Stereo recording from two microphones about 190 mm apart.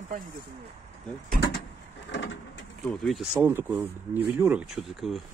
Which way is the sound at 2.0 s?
70° left (ahead or behind).